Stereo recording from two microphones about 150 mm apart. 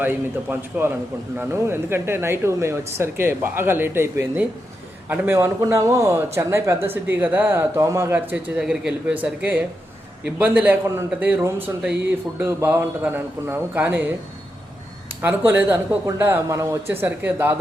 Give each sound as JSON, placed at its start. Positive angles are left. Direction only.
{"t": 0.0, "sound": "a man's voice", "side_deg": -15}
{"t": 15.2, "sound": "speech", "side_deg": -10}